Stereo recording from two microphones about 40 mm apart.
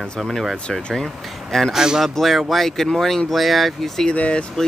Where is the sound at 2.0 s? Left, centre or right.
Centre.